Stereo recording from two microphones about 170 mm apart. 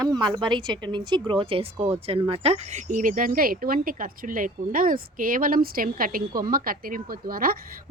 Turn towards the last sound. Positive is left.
turn(degrees=-60)  # may be behind; listen again after turning